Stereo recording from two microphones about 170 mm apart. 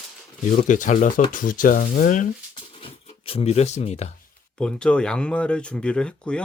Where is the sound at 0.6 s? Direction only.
50° left (ahead or behind).